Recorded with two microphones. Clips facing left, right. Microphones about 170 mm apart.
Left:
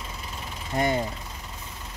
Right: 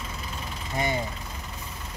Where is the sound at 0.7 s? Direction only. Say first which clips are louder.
Left 3 dB; 45° left (ahead or behind).